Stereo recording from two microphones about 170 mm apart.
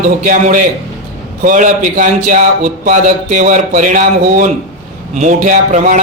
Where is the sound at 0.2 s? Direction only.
50° right (ahead or behind).